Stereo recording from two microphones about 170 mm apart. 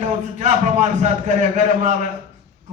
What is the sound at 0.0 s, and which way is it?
A man's voice, 45° right (ahead or behind).